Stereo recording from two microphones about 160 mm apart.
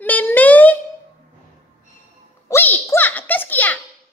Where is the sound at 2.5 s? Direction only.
15° left (ahead or behind).